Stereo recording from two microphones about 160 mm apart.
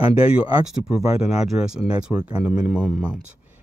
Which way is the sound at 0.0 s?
35° left (ahead or behind).